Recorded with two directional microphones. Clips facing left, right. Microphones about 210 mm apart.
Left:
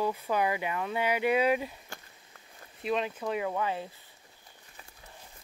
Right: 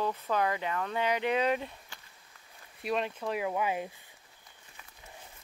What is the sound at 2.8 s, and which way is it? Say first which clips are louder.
Speech: left 1 dB; centre (ahead or behind).